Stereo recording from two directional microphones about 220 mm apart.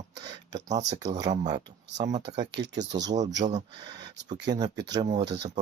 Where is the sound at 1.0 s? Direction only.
15° right (ahead or behind).